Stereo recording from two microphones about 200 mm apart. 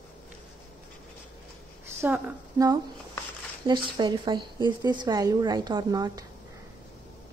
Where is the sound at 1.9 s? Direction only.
15° right (ahead or behind).